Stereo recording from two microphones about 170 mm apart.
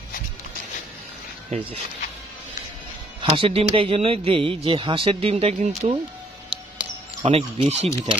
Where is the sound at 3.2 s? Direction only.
30° right (ahead or behind).